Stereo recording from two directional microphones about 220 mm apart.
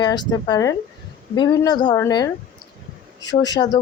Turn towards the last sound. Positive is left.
turn(degrees=20)  # may be behind; listen again after turning